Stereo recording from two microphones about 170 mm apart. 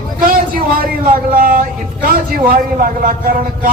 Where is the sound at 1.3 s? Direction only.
60° right (ahead or behind).